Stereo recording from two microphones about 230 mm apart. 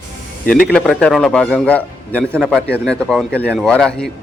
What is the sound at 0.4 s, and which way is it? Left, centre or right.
Speech, left.